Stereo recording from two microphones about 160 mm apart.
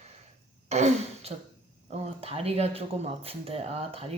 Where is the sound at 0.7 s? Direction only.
45° right (ahead or behind).